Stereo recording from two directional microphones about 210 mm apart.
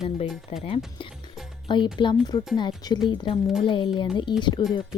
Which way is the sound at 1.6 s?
20° left (ahead or behind).